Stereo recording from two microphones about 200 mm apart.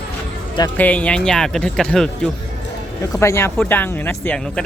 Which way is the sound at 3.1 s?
15° left (ahead or behind).